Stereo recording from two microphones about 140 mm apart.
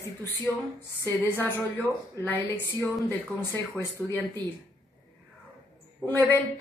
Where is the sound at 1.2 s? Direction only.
15° left (ahead or behind).